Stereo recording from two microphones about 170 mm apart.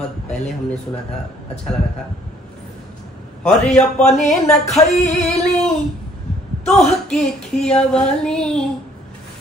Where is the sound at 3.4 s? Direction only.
5° left (ahead or behind).